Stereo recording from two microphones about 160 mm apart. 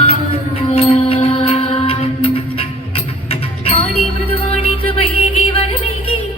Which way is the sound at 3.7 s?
40° left (ahead or behind).